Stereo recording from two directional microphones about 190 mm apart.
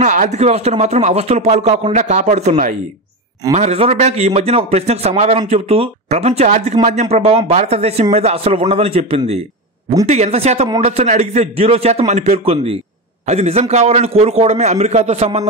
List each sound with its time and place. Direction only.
0.0 s speech: 40° right (ahead or behind)